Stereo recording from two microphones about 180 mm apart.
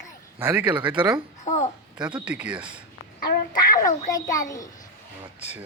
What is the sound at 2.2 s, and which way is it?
Speech, 5° right (ahead or behind).